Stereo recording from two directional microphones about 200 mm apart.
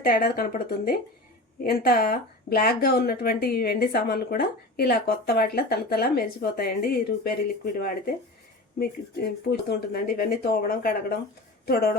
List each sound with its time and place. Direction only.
0.0 s speech: 45° left (ahead or behind)